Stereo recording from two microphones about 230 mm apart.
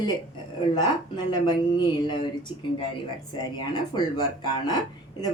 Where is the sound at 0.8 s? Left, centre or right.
Centre.